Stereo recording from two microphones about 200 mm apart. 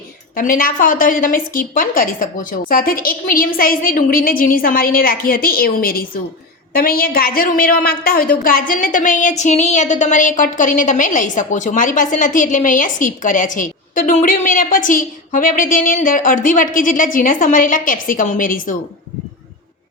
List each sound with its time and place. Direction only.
0.3 s a woman's voice: 45° left (ahead or behind)